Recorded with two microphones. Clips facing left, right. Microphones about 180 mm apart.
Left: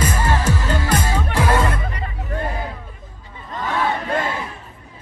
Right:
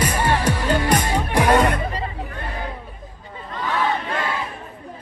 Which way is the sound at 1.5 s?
25° right (ahead or behind).